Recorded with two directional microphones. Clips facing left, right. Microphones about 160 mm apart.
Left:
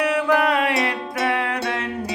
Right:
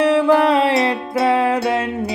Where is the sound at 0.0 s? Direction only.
25° right (ahead or behind).